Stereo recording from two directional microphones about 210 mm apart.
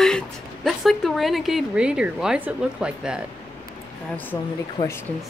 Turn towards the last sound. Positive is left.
turn(degrees=10)  # may be behind; listen again after turning